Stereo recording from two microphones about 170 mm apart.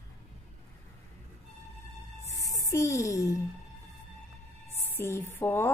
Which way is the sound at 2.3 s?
20° left (ahead or behind).